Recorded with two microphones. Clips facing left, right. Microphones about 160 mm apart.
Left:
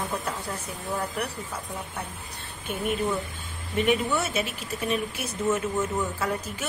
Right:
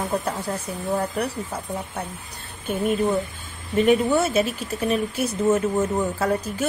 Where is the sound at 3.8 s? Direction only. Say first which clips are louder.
Right 7 dB; 40° right (ahead or behind).